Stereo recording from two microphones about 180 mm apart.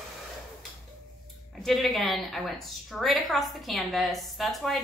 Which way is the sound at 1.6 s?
Centre (ahead or behind).